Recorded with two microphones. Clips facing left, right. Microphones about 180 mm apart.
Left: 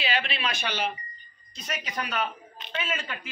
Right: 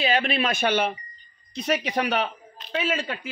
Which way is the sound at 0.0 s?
45° right (ahead or behind).